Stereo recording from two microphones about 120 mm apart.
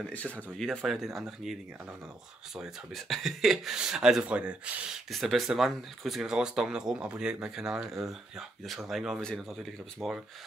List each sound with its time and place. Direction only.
0.0 s speech: 10° left (ahead or behind)